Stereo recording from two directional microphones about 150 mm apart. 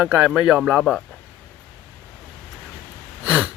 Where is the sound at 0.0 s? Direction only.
5° right (ahead or behind).